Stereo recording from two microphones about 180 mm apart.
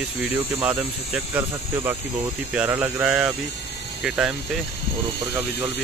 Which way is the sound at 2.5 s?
10° right (ahead or behind).